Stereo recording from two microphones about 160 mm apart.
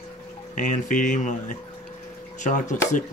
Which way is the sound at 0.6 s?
50° left (ahead or behind).